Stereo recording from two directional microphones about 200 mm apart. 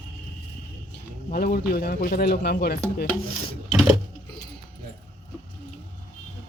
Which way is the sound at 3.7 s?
Centre (ahead or behind).